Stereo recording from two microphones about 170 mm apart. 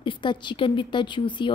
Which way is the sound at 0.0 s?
30° left (ahead or behind).